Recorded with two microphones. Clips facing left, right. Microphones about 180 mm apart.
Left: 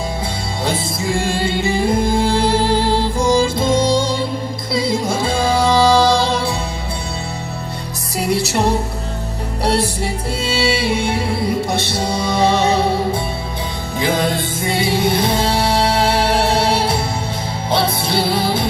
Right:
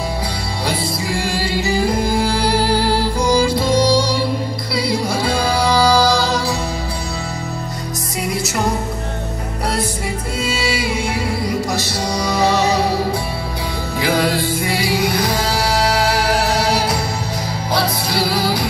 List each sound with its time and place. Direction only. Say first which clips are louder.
1.2 s music: left 2 dB; 25° left (ahead or behind)
8.2 s music: left 4 dB; 30° left (ahead or behind)
10.4 s music: left 3 dB; 30° left (ahead or behind)
14.0 s music: right 1 dB; 20° left (ahead or behind)